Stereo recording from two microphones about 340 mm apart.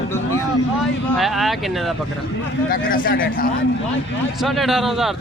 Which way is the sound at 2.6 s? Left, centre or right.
Left.